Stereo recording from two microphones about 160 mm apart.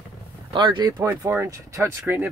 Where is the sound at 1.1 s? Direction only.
15° right (ahead or behind).